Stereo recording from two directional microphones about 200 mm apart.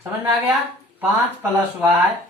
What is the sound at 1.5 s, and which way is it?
Speech, 5° right (ahead or behind).